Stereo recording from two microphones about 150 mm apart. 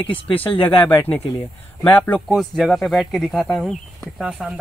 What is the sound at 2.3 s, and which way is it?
Speech, centre (ahead or behind).